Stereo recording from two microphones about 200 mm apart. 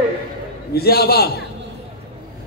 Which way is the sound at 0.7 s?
50° left (ahead or behind).